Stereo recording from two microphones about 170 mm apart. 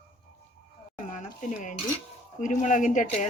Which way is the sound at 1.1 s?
50° left (ahead or behind).